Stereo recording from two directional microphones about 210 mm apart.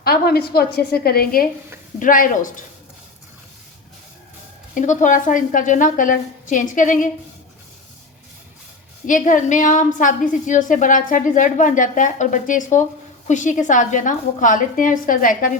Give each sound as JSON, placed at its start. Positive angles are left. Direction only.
{"t": 0.0, "sound": "a woman's voice", "side_deg": 45}
{"t": 4.7, "sound": "a woman's voice", "side_deg": 35}
{"t": 9.0, "sound": "a woman's voice", "side_deg": 40}